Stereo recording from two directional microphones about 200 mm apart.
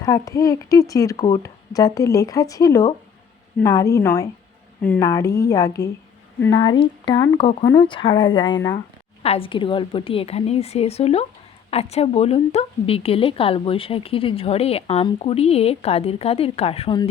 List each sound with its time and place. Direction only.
0.0 s a woman's voice: 15° left (ahead or behind)